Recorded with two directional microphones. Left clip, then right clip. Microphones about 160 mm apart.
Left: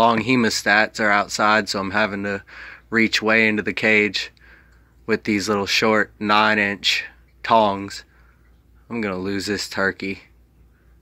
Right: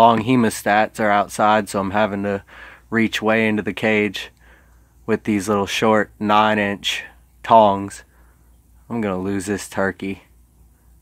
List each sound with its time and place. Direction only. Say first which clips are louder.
0.0 s speech: right 3 dB; 25° right (ahead or behind)